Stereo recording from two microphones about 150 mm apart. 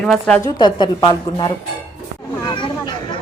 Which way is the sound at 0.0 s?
5° left (ahead or behind).